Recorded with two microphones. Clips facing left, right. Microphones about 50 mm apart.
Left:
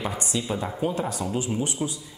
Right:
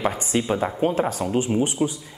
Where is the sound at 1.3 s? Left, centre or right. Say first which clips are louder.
Right 6 dB; right.